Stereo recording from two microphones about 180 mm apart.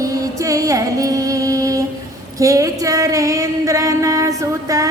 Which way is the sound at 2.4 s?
20° right (ahead or behind).